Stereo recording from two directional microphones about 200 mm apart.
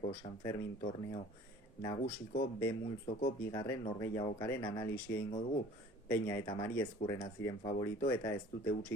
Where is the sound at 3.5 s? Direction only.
20° left (ahead or behind).